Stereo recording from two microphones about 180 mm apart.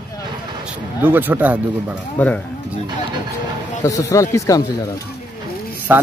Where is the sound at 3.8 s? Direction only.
20° left (ahead or behind).